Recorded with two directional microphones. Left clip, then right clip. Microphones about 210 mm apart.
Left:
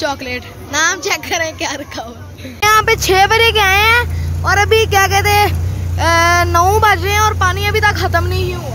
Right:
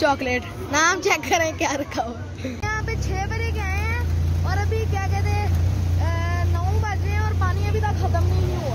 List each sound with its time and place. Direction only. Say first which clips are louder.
0.0 s a woman's voice: left 1 dB; 5° right (ahead or behind)
2.6 s speech: left 18 dB; 30° left (ahead or behind)